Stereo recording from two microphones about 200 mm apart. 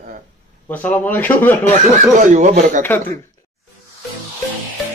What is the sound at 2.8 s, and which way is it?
Speech, 10° left (ahead or behind).